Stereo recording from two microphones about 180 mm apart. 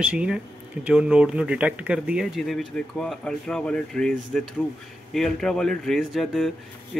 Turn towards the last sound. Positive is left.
turn(degrees=0)  # may be behind; listen again after turning